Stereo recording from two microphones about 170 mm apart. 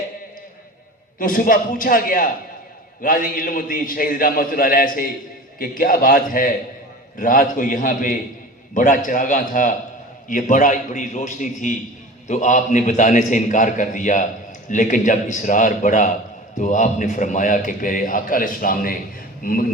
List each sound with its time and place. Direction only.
1.2 s a man's voice: 55° left (ahead or behind)